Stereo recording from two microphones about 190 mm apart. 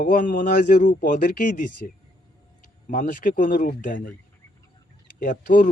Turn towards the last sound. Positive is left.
turn(degrees=45)  # may be behind; listen again after turning